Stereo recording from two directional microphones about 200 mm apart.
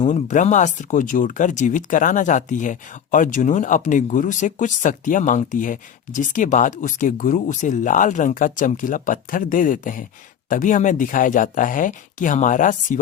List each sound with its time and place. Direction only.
0.0 s speech: 35° left (ahead or behind)